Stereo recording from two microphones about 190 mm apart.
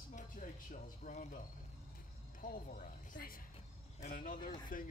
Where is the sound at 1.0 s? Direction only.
40° left (ahead or behind).